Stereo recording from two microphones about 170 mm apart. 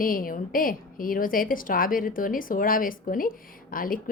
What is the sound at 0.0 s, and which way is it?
A woman's voice, 55° left (ahead or behind).